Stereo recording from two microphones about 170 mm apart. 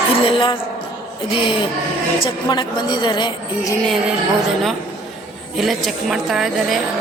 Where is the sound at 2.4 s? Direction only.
25° left (ahead or behind).